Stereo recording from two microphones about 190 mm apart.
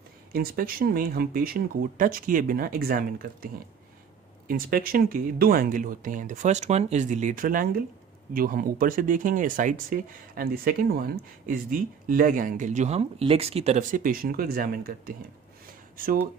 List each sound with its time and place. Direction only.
0.3 s speech: 50° right (ahead or behind)